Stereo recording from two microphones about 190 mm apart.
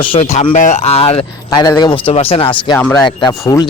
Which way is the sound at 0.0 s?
30° left (ahead or behind).